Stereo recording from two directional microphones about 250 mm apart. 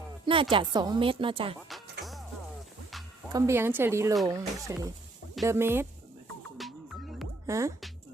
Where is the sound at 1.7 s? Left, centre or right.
Centre.